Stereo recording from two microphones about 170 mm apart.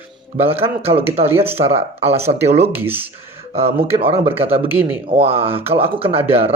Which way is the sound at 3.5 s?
35° right (ahead or behind).